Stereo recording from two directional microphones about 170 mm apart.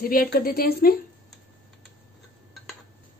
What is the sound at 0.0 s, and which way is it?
Speech, 60° left (ahead or behind).